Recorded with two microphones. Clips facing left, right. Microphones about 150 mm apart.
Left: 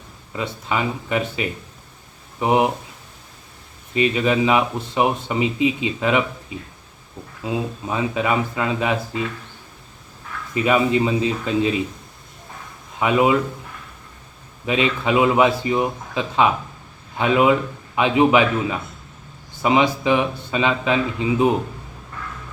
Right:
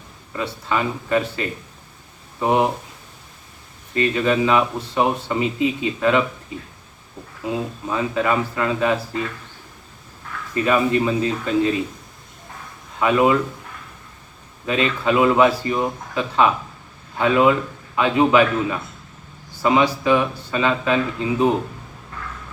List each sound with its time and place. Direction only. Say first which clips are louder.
0.3 s speech: right 1 dB; 15° left (ahead or behind)
3.9 s speech: even; 15° left (ahead or behind)
7.9 s speech: right 1 dB; 15° left (ahead or behind)
10.5 s speech: even; 15° left (ahead or behind)
13.0 s speech: right 1 dB; 15° left (ahead or behind)
14.7 s speech: even; 15° left (ahead or behind)